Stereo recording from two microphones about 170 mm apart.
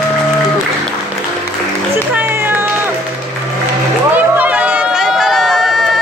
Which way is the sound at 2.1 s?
10° right (ahead or behind).